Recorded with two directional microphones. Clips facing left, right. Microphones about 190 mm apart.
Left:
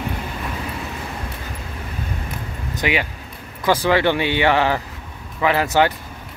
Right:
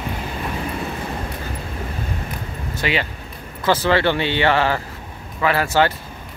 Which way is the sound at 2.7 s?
15° left (ahead or behind).